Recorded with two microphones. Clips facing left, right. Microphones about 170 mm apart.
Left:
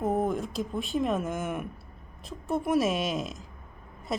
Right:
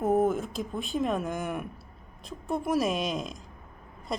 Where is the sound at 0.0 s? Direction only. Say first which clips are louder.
Right 3 dB; 5° right (ahead or behind).